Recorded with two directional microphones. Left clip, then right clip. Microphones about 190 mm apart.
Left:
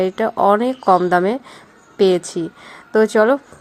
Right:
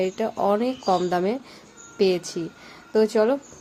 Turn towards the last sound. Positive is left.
turn(degrees=20)  # may be behind; listen again after turning